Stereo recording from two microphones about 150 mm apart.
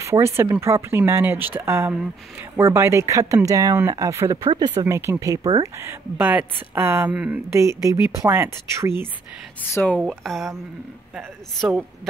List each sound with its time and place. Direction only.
0.0 s speech: 20° right (ahead or behind)
9.6 s speech: 10° left (ahead or behind)